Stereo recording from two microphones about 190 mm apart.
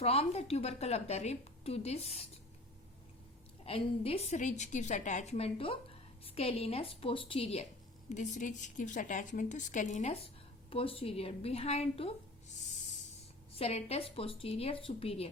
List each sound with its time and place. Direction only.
0.0 s a woman's voice: 30° left (ahead or behind)
3.7 s a woman's voice: 30° left (ahead or behind)
13.6 s a woman's voice: 35° left (ahead or behind)